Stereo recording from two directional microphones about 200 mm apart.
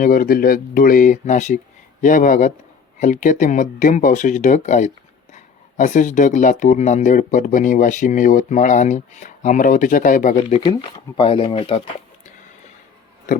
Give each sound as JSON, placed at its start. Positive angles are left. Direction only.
{"t": 0.0, "sound": "speech", "side_deg": 45}
{"t": 10.3, "sound": "speech", "side_deg": 25}